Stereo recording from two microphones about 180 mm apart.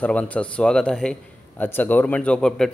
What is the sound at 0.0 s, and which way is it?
A man's voice, 5° left (ahead or behind).